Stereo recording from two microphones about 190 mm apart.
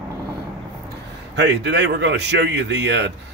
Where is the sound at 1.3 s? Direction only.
65° right (ahead or behind).